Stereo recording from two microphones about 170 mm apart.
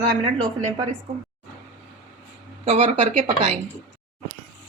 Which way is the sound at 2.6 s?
45° right (ahead or behind).